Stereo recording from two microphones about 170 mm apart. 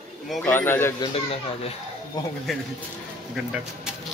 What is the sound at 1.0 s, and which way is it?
Speech, 35° left (ahead or behind).